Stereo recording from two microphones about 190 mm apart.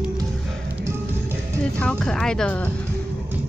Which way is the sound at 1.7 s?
5° left (ahead or behind).